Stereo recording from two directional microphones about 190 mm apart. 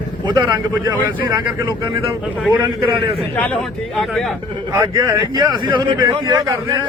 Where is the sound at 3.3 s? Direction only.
5° left (ahead or behind).